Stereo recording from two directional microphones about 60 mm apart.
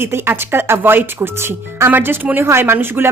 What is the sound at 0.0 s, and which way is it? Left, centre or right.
A woman's voice, right.